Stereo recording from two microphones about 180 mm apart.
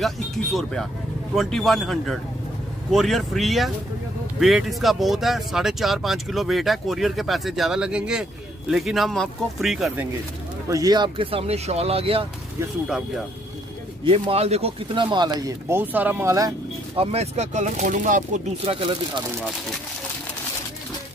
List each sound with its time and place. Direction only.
0.0 s speech: centre (ahead or behind)
10.7 s speech: 20° right (ahead or behind)
14.0 s speech: 30° right (ahead or behind)
16.9 s speech: 35° right (ahead or behind)